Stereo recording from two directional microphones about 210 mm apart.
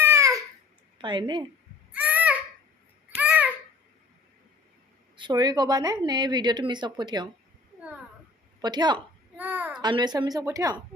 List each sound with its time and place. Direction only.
0.0 s babbling: 15° right (ahead or behind)
0.9 s speech: 20° right (ahead or behind)
1.9 s a sound: 5° right (ahead or behind)
3.2 s babbling: 5° right (ahead or behind)
5.1 s speech: 20° right (ahead or behind)
8.6 s speech: 20° right (ahead or behind)
9.3 s a sound: 10° right (ahead or behind)
9.8 s speech: 20° right (ahead or behind)